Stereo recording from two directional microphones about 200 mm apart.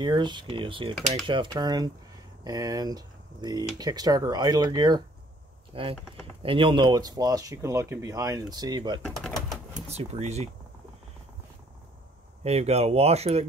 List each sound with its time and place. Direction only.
0.0 s speech: 20° right (ahead or behind)
9.0 s bird: centre (ahead or behind)
9.8 s speech: 30° right (ahead or behind)
12.4 s speech: 30° right (ahead or behind)